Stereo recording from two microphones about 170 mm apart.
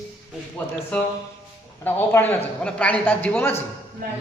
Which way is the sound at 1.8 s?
10° left (ahead or behind).